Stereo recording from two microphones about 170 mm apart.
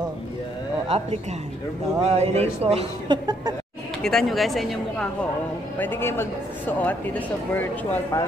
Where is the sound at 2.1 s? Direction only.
40° right (ahead or behind).